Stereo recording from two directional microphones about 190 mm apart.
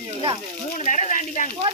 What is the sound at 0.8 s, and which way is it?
Speech, 40° left (ahead or behind).